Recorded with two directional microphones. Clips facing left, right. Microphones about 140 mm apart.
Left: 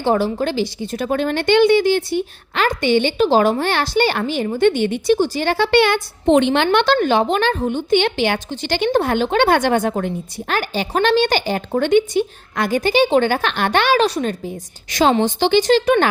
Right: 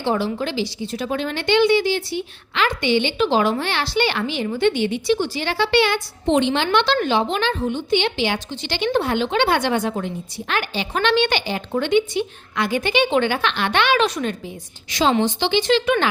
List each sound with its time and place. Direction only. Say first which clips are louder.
0.0 s a woman's voice: left 4 dB; 45° left (ahead or behind)